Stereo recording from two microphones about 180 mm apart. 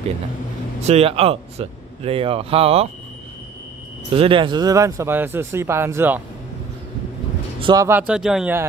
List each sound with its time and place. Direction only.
0.8 s speech: 35° right (ahead or behind)
4.1 s speech: 30° right (ahead or behind); by 6.2 s 10° right (ahead or behind)
7.6 s speech: 20° right (ahead or behind)
8.1 s speech: 5° right (ahead or behind)